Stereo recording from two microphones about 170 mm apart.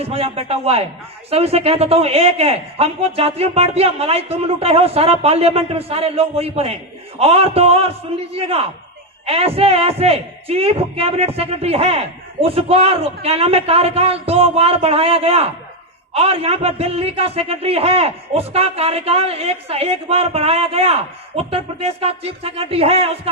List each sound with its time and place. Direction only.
0.0 s a man's voice: 35° right (ahead or behind)